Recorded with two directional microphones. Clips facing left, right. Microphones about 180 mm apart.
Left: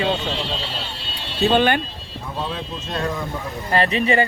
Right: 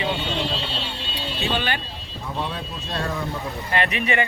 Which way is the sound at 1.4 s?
50° left (ahead or behind).